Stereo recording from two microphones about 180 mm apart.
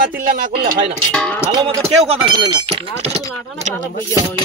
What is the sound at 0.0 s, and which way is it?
Speech, 50° right (ahead or behind).